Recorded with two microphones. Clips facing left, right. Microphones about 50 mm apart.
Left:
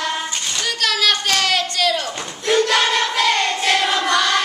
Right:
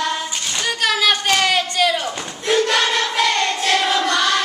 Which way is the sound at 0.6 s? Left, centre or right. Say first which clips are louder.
Right 2 dB; centre.